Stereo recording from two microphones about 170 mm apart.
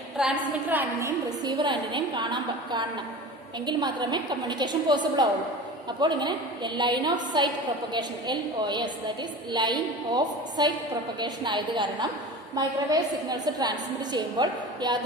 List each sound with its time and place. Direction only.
0.2 s a woman's voice: 10° right (ahead or behind)
1.5 s a woman's voice: 25° right (ahead or behind)